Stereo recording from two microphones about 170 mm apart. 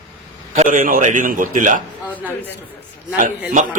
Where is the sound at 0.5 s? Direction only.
50° right (ahead or behind).